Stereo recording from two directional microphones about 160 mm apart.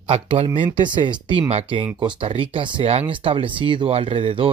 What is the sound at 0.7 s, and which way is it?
Speech, 30° right (ahead or behind).